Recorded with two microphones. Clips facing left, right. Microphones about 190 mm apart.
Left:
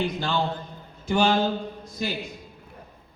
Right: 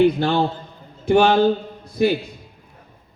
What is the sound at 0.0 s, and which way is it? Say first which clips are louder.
A man's voice: right 9 dB; 60° right (ahead or behind).